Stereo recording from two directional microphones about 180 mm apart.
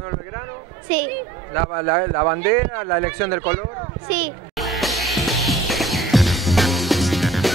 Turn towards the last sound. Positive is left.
turn(degrees=0)  # may be behind; listen again after turning